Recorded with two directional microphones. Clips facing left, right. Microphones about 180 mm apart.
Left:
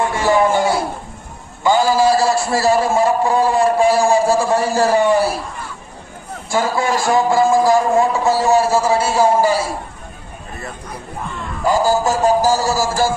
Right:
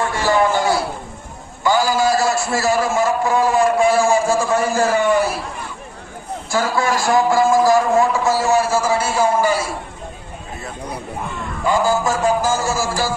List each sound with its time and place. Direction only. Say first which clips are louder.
1.6 s a man's voice: left 3 dB; 25° left (ahead or behind)
6.5 s a man's voice: left 1 dB; 25° left (ahead or behind)
11.6 s a man's voice: left 2 dB; 40° left (ahead or behind)